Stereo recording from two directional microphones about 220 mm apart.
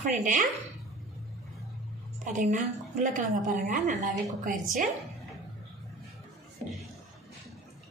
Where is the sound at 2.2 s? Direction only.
35° right (ahead or behind).